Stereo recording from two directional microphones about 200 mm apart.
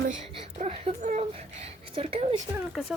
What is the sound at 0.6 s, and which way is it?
Speech, 35° right (ahead or behind).